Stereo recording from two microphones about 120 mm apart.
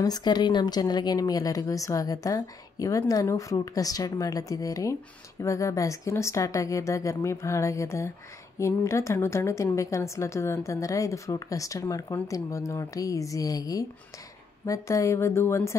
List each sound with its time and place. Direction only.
0.0 s speech: 35° left (ahead or behind)